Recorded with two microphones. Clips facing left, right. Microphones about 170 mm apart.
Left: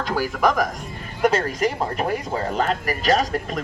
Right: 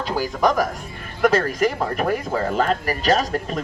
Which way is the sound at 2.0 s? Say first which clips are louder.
Right 2 dB; 45° right (ahead or behind).